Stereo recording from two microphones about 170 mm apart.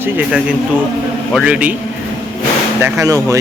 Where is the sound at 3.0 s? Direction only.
20° right (ahead or behind).